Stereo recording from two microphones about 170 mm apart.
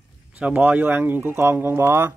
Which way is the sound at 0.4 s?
10° right (ahead or behind).